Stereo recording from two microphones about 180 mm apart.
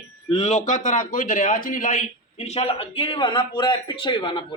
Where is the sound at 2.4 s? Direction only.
35° left (ahead or behind).